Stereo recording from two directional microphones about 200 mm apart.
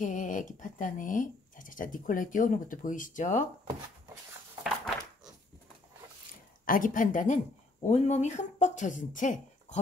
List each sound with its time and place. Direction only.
0.0 s speech: 40° left (ahead or behind)
4.6 s a sound: centre (ahead or behind)
6.6 s speech: 45° left (ahead or behind)